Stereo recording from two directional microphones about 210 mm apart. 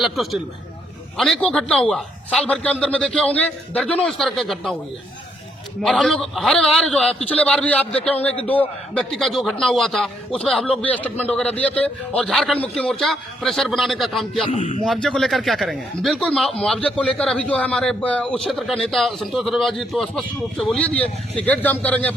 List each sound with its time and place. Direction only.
0.0 s a man's voice: centre (ahead or behind)
5.8 s a man's voice: centre (ahead or behind)
14.4 s a man's voice: 25° left (ahead or behind)
15.0 s a man's voice: centre (ahead or behind)